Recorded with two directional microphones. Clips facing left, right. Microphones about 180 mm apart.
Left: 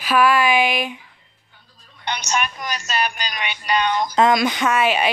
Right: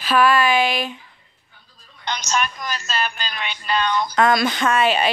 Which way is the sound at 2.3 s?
10° left (ahead or behind).